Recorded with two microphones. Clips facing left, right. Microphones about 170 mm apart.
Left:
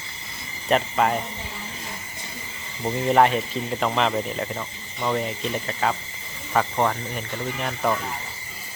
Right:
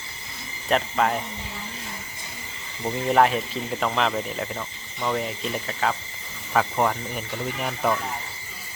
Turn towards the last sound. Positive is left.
turn(degrees=-5)  # may be behind; listen again after turning